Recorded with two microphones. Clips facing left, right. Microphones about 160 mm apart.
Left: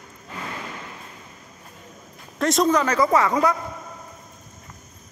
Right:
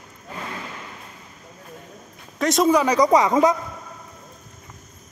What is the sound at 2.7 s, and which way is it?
Speech, 15° right (ahead or behind).